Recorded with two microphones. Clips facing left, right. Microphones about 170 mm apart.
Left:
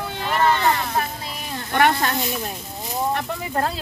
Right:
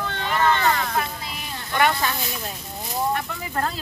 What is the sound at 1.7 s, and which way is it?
Speech, 55° left (ahead or behind).